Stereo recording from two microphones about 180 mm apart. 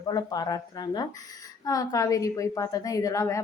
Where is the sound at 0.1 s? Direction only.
20° left (ahead or behind).